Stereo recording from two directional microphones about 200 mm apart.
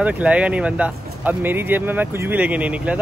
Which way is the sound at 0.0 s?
5° right (ahead or behind).